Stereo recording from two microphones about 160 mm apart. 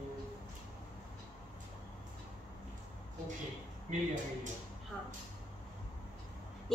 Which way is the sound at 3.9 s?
50° right (ahead or behind).